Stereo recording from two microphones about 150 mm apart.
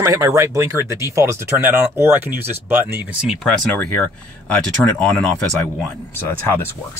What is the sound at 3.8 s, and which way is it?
Speech, 10° left (ahead or behind).